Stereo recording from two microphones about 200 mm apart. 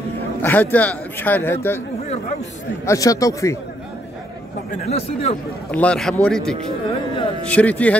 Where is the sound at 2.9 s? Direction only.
15° left (ahead or behind).